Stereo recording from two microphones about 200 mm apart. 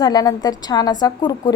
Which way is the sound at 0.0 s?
20° left (ahead or behind).